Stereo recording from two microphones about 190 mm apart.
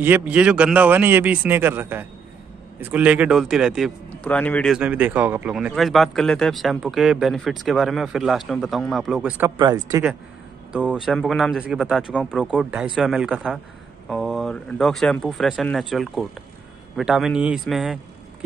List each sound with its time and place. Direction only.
0.0 s speech: 10° right (ahead or behind)
4.1 s a man's voice: 5° left (ahead or behind)
4.7 s speech: 10° right (ahead or behind)
9.6 s speech: 20° right (ahead or behind)
10.7 s speech: 5° right (ahead or behind)